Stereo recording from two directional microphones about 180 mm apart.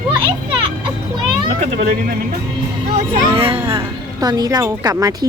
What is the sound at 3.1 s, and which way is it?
Speech, 30° right (ahead or behind).